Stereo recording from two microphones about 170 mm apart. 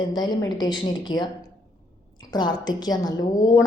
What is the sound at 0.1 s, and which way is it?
A woman's voice, 25° left (ahead or behind).